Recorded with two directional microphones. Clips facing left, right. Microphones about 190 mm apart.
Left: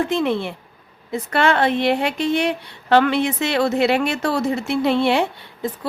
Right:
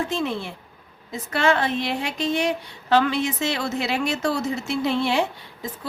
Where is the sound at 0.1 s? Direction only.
60° left (ahead or behind).